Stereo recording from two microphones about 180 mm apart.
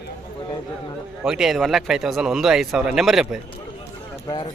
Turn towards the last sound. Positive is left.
turn(degrees=25)  # may be behind; listen again after turning